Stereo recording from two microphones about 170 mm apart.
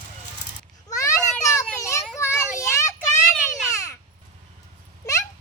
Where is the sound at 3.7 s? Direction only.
15° left (ahead or behind).